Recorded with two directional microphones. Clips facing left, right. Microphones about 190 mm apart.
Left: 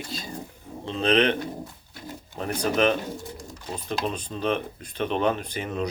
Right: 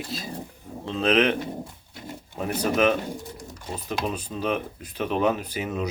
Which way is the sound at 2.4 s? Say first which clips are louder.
Right 1 dB; 5° right (ahead or behind).